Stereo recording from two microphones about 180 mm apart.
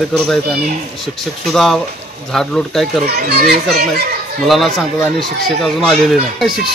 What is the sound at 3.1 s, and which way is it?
Speech, 60° right (ahead or behind).